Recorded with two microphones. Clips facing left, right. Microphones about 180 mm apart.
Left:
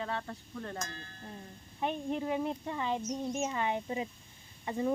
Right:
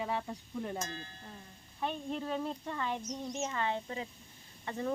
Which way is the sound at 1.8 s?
15° left (ahead or behind).